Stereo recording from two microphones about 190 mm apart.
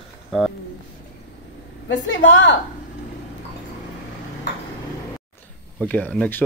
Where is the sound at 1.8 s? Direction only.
75° left (ahead or behind).